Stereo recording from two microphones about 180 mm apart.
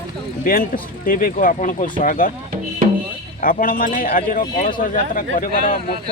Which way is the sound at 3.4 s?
50° left (ahead or behind).